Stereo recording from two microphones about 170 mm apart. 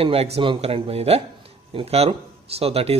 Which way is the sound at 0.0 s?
35° right (ahead or behind).